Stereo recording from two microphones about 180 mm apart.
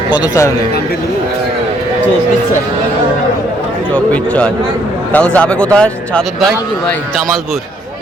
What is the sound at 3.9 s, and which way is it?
A man's voice, 5° left (ahead or behind).